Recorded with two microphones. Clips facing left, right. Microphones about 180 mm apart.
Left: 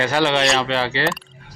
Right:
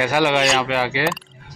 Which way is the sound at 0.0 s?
10° right (ahead or behind).